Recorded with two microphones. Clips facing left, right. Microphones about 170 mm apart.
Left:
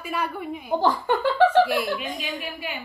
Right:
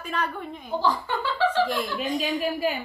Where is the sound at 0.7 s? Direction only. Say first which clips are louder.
Left 4 dB; 50° left (ahead or behind).